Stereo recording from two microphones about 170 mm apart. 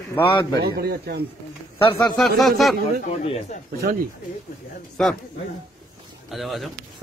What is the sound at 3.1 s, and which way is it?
Speech, 40° left (ahead or behind).